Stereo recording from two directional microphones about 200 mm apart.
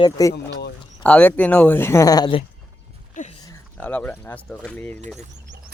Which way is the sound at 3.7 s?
10° left (ahead or behind).